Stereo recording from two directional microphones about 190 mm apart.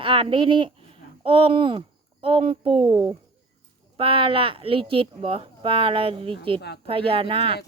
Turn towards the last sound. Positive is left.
turn(degrees=-30)  # may be behind; listen again after turning